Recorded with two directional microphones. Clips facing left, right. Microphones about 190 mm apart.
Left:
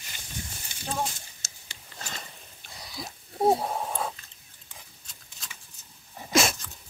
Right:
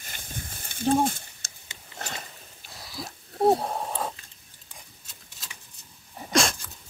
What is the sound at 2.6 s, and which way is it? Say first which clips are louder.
Wheeze: right 1 dB; centre (ahead or behind).